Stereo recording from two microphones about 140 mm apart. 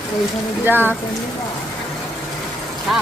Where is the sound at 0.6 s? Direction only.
15° right (ahead or behind).